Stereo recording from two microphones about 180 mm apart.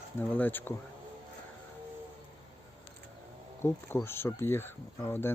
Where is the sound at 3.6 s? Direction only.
15° left (ahead or behind).